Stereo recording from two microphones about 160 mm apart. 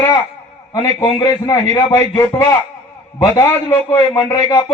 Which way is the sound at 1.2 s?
25° left (ahead or behind).